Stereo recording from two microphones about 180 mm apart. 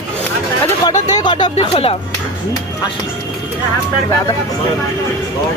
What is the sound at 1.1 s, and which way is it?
Music, 25° left (ahead or behind).